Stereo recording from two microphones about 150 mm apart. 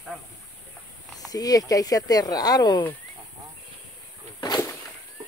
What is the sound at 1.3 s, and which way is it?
Speech, 25° left (ahead or behind).